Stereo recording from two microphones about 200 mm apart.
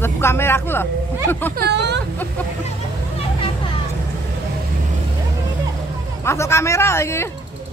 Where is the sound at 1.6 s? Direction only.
55° right (ahead or behind).